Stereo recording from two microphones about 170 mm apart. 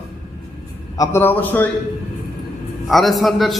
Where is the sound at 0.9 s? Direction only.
15° left (ahead or behind).